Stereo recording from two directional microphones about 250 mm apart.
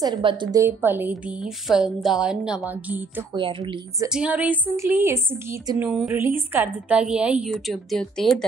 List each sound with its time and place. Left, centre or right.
0.0 s a woman's voice: centre
3.3 s a woman's voice: centre
4.1 s a woman's voice: centre